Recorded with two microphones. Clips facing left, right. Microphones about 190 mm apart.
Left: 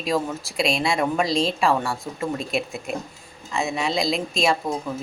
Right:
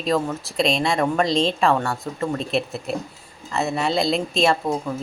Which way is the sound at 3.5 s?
5° right (ahead or behind).